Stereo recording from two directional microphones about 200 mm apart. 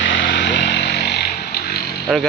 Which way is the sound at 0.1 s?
65° left (ahead or behind).